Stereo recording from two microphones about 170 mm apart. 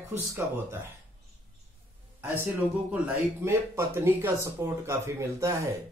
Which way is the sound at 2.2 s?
10° right (ahead or behind).